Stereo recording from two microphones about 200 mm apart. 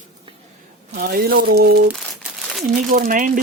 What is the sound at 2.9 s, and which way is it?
Speech, 40° right (ahead or behind).